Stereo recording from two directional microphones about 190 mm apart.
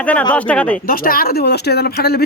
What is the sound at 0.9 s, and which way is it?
Speech, 50° left (ahead or behind).